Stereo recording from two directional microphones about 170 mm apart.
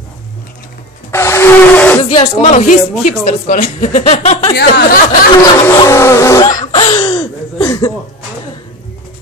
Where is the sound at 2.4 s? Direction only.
50° left (ahead or behind).